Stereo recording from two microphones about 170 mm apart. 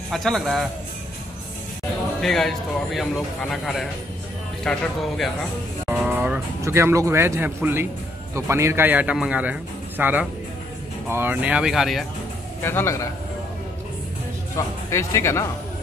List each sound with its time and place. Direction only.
0.1 s speech: centre (ahead or behind)
2.2 s speech: centre (ahead or behind)
5.9 s speech: 10° right (ahead or behind)
12.6 s speech: 15° left (ahead or behind)
14.9 s speech: 15° left (ahead or behind)